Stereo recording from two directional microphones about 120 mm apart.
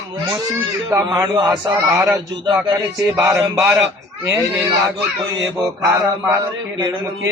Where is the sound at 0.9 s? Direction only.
30° right (ahead or behind).